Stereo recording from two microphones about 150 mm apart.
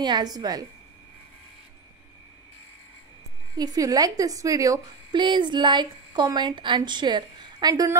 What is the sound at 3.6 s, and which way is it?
A woman's voice, 25° right (ahead or behind).